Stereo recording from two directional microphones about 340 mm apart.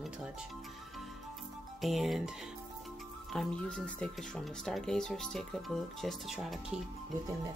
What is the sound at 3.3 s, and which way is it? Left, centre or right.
Speech, centre.